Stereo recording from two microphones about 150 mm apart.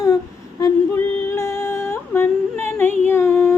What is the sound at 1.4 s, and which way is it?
Yodeling, 20° left (ahead or behind).